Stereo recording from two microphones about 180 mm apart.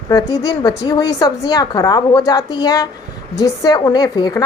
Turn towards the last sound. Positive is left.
turn(degrees=20)  # may be behind; listen again after turning